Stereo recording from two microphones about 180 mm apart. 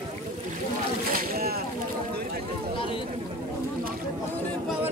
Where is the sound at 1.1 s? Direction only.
55° right (ahead or behind).